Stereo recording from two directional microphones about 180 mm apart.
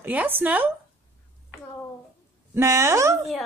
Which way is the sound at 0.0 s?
10° right (ahead or behind).